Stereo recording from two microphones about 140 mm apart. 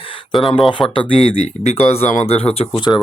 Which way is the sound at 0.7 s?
35° left (ahead or behind).